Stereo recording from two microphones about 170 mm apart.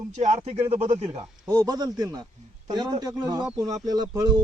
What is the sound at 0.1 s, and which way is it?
A man's voice, 45° right (ahead or behind).